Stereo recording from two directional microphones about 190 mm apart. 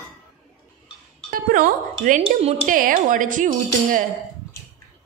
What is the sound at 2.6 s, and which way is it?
A woman's voice, 45° right (ahead or behind).